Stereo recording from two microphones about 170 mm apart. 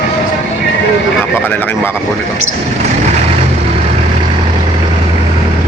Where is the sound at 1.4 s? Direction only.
10° left (ahead or behind).